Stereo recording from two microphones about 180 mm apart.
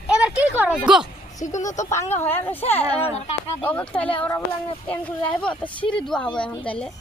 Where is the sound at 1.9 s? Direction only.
15° left (ahead or behind).